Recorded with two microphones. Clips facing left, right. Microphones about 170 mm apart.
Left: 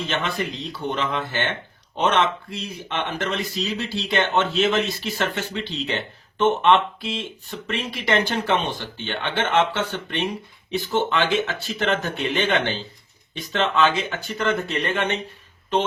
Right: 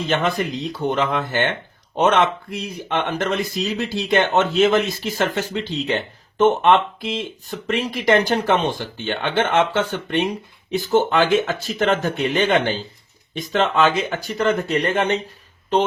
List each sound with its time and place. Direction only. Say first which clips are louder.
0.1 s speech: right 8 dB; 45° right (ahead or behind)